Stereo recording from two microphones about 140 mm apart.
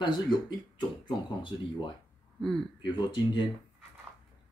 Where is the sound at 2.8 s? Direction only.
35° left (ahead or behind).